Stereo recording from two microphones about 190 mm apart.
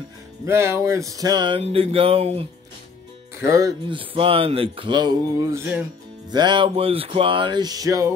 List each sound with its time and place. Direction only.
0.5 s speech: 15° right (ahead or behind); by 2.4 s 30° right (ahead or behind)
3.3 s speech: 15° right (ahead or behind)
4.0 s speech: 30° right (ahead or behind)